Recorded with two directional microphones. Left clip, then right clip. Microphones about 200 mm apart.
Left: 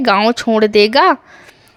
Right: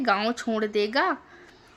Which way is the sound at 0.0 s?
40° left (ahead or behind).